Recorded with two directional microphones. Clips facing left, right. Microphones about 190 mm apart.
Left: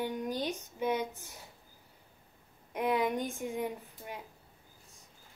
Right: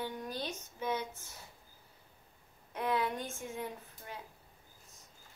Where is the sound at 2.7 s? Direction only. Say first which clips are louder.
Left 4 dB; 15° left (ahead or behind).